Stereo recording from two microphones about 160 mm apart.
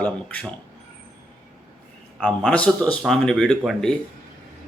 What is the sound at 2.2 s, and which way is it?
Speech, 5° left (ahead or behind).